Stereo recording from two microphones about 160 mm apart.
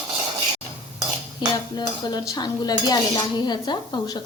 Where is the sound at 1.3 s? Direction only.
25° left (ahead or behind).